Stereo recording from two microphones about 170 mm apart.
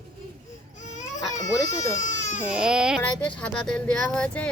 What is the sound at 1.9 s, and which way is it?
Speech, 45° left (ahead or behind).